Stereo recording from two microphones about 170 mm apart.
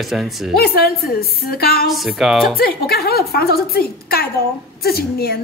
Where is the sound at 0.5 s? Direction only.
65° left (ahead or behind).